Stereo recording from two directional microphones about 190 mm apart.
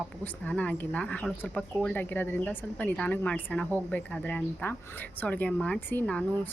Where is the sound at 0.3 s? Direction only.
10° left (ahead or behind).